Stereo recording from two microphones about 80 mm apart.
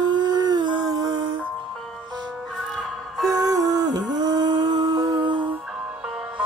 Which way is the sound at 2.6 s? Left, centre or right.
Centre.